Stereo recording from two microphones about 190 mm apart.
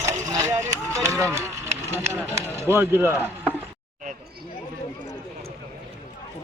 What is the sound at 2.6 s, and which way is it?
Speech, 10° right (ahead or behind).